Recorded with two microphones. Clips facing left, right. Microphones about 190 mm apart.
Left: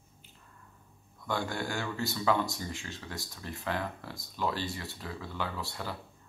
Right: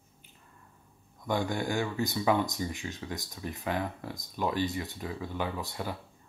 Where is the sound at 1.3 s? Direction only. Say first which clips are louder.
Right 4 dB; 15° right (ahead or behind).